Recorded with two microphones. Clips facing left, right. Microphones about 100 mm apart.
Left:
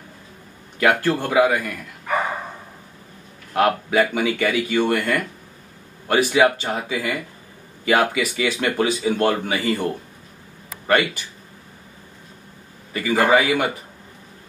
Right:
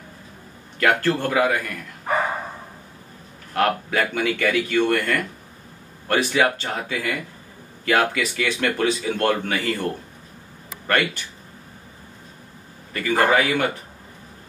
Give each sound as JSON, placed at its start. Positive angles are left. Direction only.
{"t": 0.7, "sound": "speech", "side_deg": 5}
{"t": 2.1, "sound": "dog", "side_deg": -35}
{"t": 3.5, "sound": "speech", "side_deg": 5}
{"t": 12.9, "sound": "speech", "side_deg": 5}